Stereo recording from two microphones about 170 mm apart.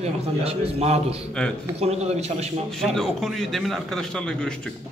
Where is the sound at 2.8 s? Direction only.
Centre (ahead or behind).